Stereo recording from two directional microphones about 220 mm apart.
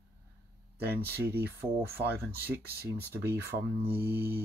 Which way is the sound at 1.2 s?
45° right (ahead or behind).